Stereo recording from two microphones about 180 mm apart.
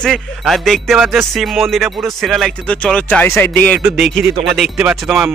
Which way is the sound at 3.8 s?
5° right (ahead or behind).